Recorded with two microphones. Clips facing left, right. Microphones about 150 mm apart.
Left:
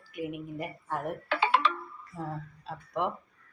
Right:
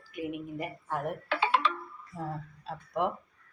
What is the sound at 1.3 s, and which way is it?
Ringtone, 75° left (ahead or behind).